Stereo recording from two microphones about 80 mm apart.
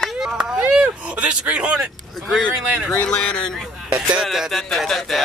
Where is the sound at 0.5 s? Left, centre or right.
Centre.